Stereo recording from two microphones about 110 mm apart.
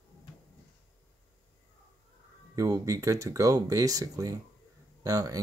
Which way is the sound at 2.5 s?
35° right (ahead or behind).